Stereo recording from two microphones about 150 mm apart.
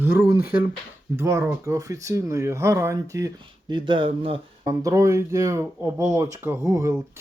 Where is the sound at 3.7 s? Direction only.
35° right (ahead or behind).